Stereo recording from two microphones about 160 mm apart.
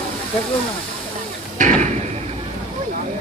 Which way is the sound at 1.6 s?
50° right (ahead or behind).